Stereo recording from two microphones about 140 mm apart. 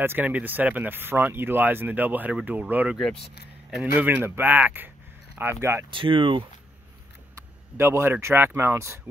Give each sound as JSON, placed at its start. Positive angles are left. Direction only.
{"t": 0.0, "sound": "speech", "side_deg": -15}
{"t": 3.0, "sound": "speech", "side_deg": 5}
{"t": 4.0, "sound": "speech", "side_deg": -15}
{"t": 5.9, "sound": "speech", "side_deg": -35}
{"t": 7.3, "sound": "speech", "side_deg": -15}